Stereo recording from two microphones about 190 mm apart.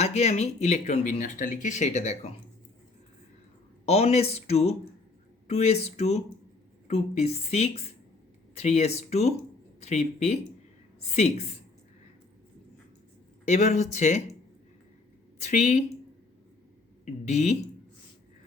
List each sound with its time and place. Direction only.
0.0 s speech: 35° left (ahead or behind)
3.8 s speech: 35° left (ahead or behind)
13.5 s speech: 40° left (ahead or behind)
15.4 s speech: 40° left (ahead or behind)
17.1 s speech: 35° left (ahead or behind)